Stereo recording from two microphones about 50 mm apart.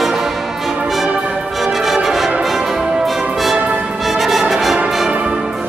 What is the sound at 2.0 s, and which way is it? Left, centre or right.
Brass instrument, centre.